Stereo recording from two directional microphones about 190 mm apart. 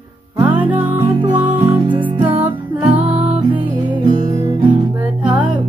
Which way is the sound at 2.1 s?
25° right (ahead or behind).